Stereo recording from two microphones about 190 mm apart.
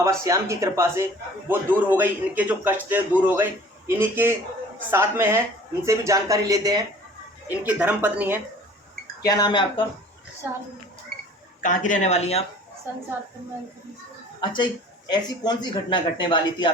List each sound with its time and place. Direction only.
0.0 s a man's voice: 15° right (ahead or behind)
7.4 s a man's voice: 10° right (ahead or behind)
9.2 s a man's voice: 20° left (ahead or behind)
11.6 s speech: 45° left (ahead or behind)
14.4 s a man's voice: 25° left (ahead or behind)